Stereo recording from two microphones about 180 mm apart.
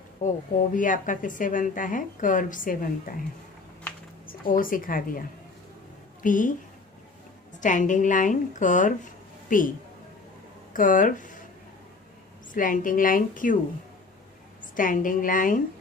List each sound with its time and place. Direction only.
0.2 s a woman's voice: 45° left (ahead or behind)
4.3 s speech: 50° left (ahead or behind)
6.2 s a woman's voice: 45° left (ahead or behind)
7.6 s a woman's voice: 45° left (ahead or behind)
12.5 s a woman's voice: 50° left (ahead or behind)
14.8 s a woman's voice: 50° left (ahead or behind)